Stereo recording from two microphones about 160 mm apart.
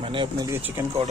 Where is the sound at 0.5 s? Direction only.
15° right (ahead or behind).